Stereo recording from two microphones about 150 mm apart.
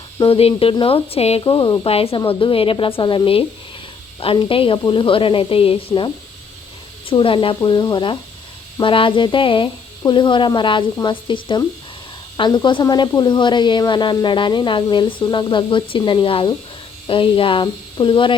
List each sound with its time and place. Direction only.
0.2 s a woman's voice: 40° left (ahead or behind)
7.1 s a woman's voice: 35° left (ahead or behind)